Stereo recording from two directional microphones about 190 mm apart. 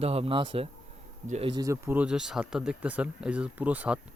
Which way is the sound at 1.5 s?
15° right (ahead or behind).